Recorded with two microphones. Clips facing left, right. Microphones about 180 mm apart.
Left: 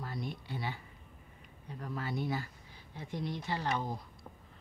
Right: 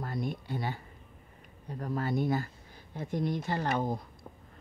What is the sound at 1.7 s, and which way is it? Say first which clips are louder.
Speech: right 6 dB; 45° right (ahead or behind).